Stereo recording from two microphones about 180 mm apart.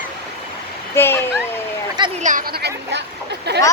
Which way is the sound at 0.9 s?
15° left (ahead or behind).